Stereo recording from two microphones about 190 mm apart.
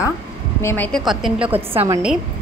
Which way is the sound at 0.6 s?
10° left (ahead or behind).